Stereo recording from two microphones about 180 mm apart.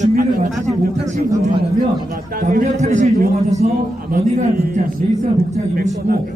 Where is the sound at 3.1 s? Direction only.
55° right (ahead or behind).